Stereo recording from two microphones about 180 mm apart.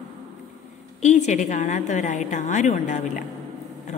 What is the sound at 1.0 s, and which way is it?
A woman's voice, 40° left (ahead or behind).